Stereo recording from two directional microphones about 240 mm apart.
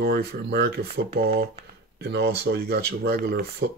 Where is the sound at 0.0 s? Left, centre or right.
Right.